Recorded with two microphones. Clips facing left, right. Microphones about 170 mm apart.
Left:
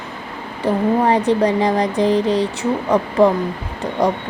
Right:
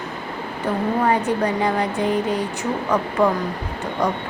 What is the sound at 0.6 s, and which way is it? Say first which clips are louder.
Speech: left 4 dB; 30° left (ahead or behind).